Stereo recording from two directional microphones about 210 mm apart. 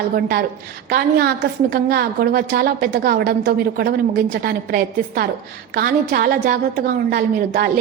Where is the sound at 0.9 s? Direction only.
45° right (ahead or behind).